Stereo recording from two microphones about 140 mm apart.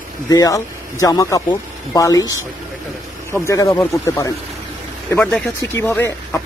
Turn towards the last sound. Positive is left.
turn(degrees=15)  # may be behind; listen again after turning